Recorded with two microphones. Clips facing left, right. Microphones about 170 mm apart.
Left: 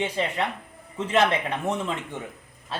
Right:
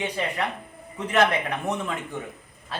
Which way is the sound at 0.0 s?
25° left (ahead or behind).